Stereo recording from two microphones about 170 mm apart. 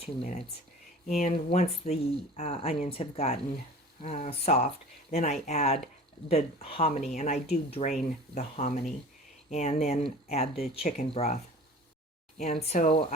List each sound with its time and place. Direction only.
0.0 s speech: 35° left (ahead or behind)
12.4 s speech: 40° left (ahead or behind)